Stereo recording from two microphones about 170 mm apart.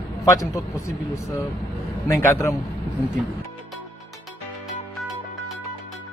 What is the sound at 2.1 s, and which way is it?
Speech, 15° left (ahead or behind).